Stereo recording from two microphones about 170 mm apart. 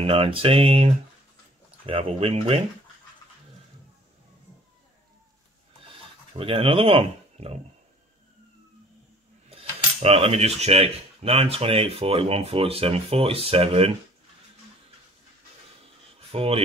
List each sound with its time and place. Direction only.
0.0 s speech: 35° right (ahead or behind)
5.9 s speech: 35° right (ahead or behind)
9.5 s speech: 35° right (ahead or behind)
16.2 s speech: 35° right (ahead or behind)